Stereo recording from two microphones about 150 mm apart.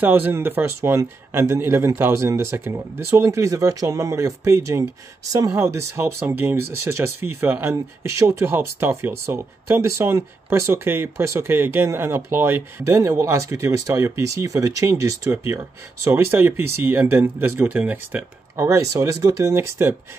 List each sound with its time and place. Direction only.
0.0 s speech: 15° right (ahead or behind)